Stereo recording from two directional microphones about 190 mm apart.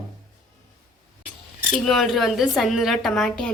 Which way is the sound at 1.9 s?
Centre (ahead or behind).